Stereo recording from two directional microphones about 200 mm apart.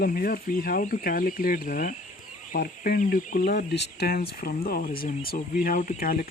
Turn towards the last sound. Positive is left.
turn(degrees=45)  # may be behind; listen again after turning